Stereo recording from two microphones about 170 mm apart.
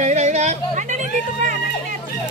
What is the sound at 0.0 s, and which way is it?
Hubbub, 40° right (ahead or behind).